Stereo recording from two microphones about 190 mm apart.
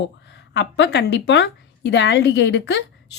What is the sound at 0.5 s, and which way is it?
A woman's voice, 65° left (ahead or behind).